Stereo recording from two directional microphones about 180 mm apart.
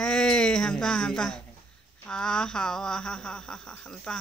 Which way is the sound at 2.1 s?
5° left (ahead or behind).